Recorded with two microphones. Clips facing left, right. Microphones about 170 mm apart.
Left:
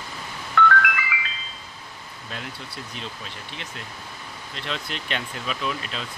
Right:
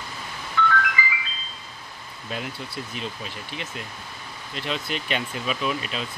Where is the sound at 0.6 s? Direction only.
70° left (ahead or behind).